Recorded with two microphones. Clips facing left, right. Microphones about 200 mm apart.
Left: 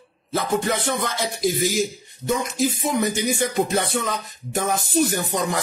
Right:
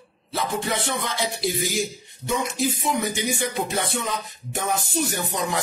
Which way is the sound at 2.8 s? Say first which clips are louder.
Left 3 dB; 40° left (ahead or behind).